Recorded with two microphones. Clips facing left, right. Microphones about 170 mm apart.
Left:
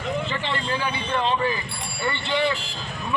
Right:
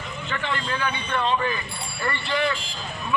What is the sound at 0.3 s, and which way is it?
Speech, 30° left (ahead or behind).